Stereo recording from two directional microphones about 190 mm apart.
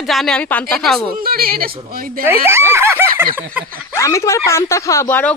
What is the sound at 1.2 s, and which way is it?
Speech, 50° right (ahead or behind).